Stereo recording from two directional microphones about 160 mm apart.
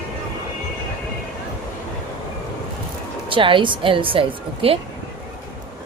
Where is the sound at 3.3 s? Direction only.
30° right (ahead or behind).